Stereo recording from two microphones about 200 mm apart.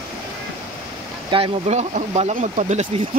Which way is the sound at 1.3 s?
30° right (ahead or behind).